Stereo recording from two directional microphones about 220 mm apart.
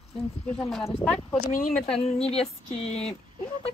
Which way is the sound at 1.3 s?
35° left (ahead or behind).